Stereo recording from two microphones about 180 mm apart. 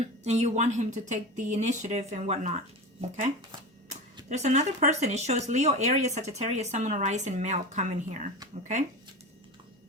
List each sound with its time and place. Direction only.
0.0 s speech: 40° right (ahead or behind)
4.3 s speech: 40° right (ahead or behind)